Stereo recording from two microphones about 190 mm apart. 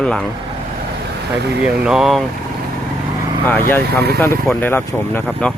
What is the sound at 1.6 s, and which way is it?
Speech, 5° right (ahead or behind).